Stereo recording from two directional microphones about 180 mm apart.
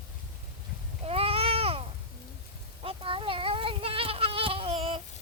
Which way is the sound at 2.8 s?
30° right (ahead or behind).